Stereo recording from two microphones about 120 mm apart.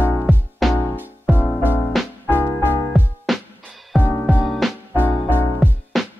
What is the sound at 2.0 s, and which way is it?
Music, centre (ahead or behind).